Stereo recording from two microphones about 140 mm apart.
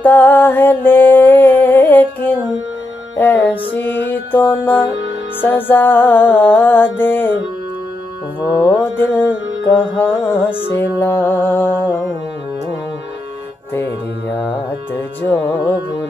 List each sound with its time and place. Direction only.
0.0 s music: 15° left (ahead or behind)
8.5 s music: 15° left (ahead or behind)
14.3 s music: 15° left (ahead or behind)